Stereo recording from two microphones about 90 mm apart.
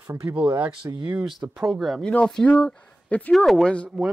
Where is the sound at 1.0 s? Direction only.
15° right (ahead or behind).